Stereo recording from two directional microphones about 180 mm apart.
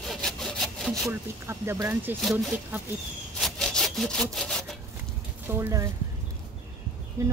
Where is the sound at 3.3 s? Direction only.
Centre (ahead or behind).